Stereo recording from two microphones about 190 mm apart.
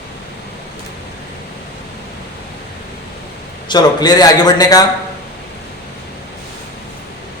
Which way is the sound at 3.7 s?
20° left (ahead or behind).